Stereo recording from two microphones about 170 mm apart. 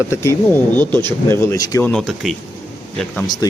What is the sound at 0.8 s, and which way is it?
Speech, 25° right (ahead or behind).